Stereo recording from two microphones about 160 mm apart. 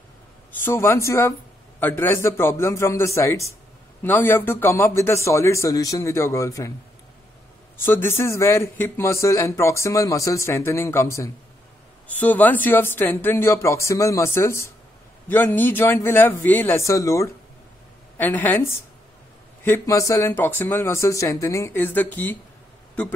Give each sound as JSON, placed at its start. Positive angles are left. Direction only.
{"t": 0.5, "sound": "a man's voice", "side_deg": 15}
{"t": 7.7, "sound": "a man's voice", "side_deg": 15}